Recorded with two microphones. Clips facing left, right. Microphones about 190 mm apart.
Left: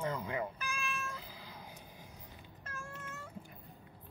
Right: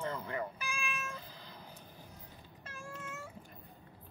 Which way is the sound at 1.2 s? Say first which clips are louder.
Left 1 dB; 10° left (ahead or behind).